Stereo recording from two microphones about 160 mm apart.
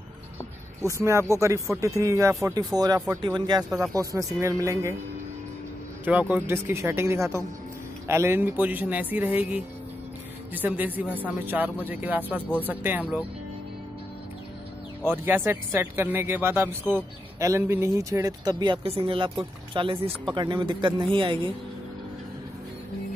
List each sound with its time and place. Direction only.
1.0 s speech: 20° right (ahead or behind)
6.0 s speech: 10° right (ahead or behind)
15.0 s speech: 15° right (ahead or behind); by 21.5 s 30° right (ahead or behind)